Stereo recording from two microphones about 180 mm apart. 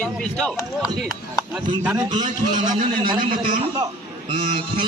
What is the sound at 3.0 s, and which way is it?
Speech, 25° right (ahead or behind).